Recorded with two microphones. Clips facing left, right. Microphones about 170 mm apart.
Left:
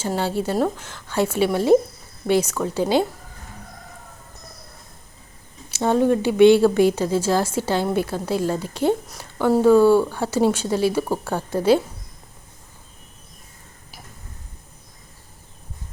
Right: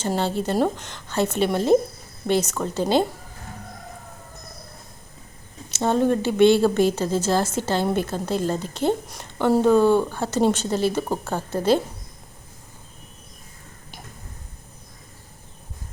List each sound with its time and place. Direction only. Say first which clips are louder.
0.2 s a woman's voice: left 1 dB; 10° left (ahead or behind)
5.6 s a woman's voice: left 2 dB; 10° left (ahead or behind)